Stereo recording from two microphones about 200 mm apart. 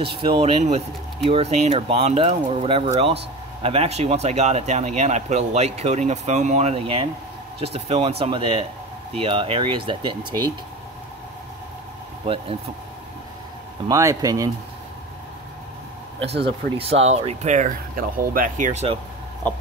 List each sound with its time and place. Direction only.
0.0 s speech: 25° right (ahead or behind)
13.8 s speech: 15° right (ahead or behind)
16.2 s speech: 30° right (ahead or behind)